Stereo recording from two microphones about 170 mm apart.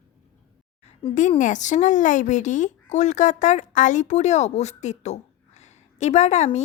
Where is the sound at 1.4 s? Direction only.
45° left (ahead or behind).